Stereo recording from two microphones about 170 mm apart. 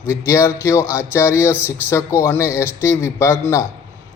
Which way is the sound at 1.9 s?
15° left (ahead or behind).